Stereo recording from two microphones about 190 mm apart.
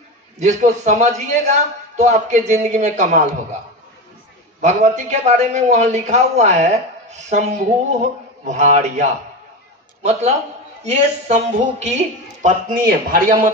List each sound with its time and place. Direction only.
0.4 s a man's voice: 40° right (ahead or behind)
4.6 s a man's voice: 40° right (ahead or behind)
10.8 s a man's voice: 35° right (ahead or behind)